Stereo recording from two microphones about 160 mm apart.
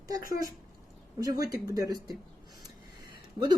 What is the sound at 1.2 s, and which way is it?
Speech, 25° right (ahead or behind).